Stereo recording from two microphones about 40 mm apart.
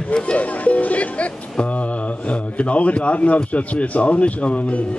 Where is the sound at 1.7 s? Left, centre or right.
Left.